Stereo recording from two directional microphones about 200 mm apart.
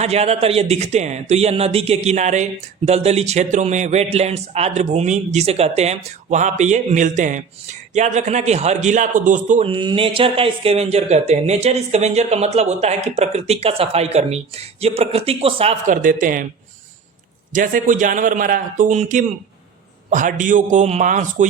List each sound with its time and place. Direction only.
0.0 s speech: 30° right (ahead or behind)
9.6 s speech: 25° right (ahead or behind); by 16.5 s 40° right (ahead or behind)
17.5 s speech: 40° right (ahead or behind)